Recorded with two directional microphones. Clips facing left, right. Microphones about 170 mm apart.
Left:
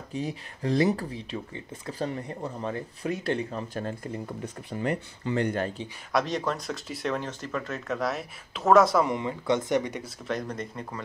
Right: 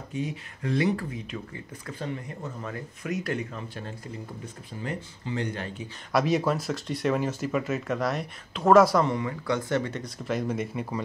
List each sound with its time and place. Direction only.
0.1 s speech: 35° left (ahead or behind)
4.8 s speech: 60° left (ahead or behind)
6.1 s speech: 10° right (ahead or behind)
9.0 s speech: 20° left (ahead or behind)
10.0 s speech: 5° right (ahead or behind)